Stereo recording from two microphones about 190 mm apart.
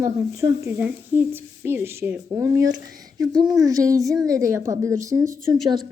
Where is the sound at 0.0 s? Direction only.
15° right (ahead or behind).